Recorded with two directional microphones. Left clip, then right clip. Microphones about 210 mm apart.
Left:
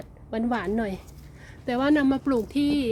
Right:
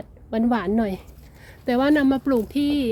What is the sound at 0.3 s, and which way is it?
A woman's voice, 20° right (ahead or behind).